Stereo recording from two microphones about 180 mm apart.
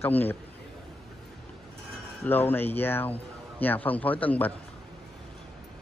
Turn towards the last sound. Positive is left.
turn(degrees=10)  # may be behind; listen again after turning